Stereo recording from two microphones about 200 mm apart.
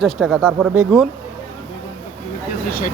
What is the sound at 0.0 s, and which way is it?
Speech, centre (ahead or behind).